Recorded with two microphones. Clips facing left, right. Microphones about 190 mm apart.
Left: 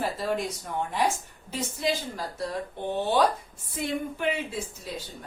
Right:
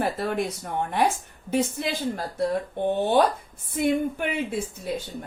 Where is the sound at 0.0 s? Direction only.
60° right (ahead or behind).